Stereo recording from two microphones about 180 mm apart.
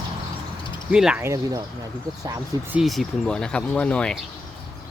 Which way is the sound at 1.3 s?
20° right (ahead or behind).